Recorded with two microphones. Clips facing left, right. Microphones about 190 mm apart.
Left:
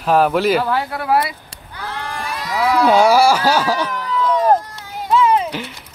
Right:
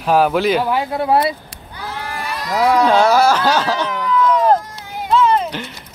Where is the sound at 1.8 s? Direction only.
10° right (ahead or behind); by 3.8 s 10° left (ahead or behind).